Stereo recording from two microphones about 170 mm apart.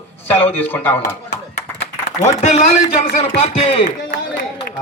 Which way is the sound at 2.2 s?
40° left (ahead or behind).